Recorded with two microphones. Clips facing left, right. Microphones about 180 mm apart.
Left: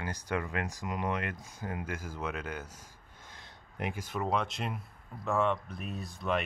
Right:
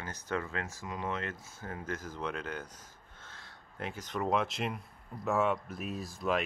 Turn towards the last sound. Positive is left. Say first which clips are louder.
# right 1 dB
turn(degrees=0)  # may be behind; listen again after turning